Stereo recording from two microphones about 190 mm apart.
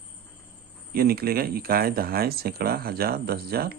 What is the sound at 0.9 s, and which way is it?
Speech, 50° right (ahead or behind).